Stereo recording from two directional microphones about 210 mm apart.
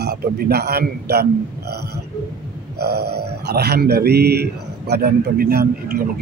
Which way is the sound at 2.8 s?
50° right (ahead or behind).